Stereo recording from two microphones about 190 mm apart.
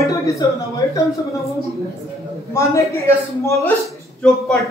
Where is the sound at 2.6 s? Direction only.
15° left (ahead or behind).